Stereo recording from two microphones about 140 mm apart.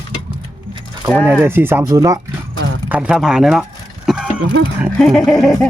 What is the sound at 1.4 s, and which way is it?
Speech, 15° right (ahead or behind).